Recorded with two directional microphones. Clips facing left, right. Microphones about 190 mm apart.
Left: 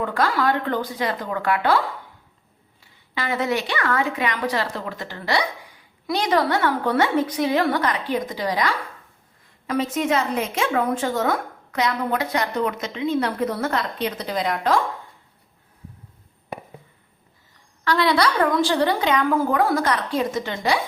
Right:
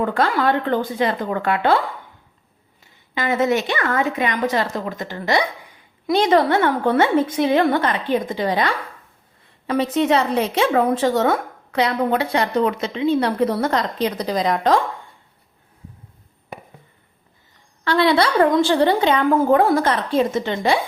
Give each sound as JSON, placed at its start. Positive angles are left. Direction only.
{"t": 0.1, "sound": "a woman's voice", "side_deg": -25}
{"t": 3.2, "sound": "a woman's voice", "side_deg": -20}
{"t": 17.8, "sound": "a woman's voice", "side_deg": -25}